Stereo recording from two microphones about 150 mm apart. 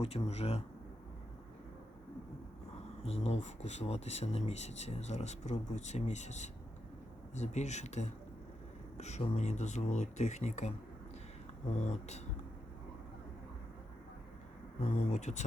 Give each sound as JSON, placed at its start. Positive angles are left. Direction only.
{"t": 0.0, "sound": "speech", "side_deg": 45}
{"t": 2.7, "sound": "speech", "side_deg": 45}
{"t": 11.8, "sound": "speech", "side_deg": 50}
{"t": 14.8, "sound": "speech", "side_deg": 50}